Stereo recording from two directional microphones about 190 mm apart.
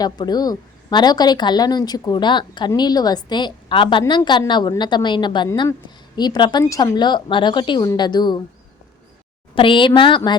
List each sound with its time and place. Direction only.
0.0 s a woman's voice: 20° left (ahead or behind)
9.6 s a woman's voice: 25° left (ahead or behind)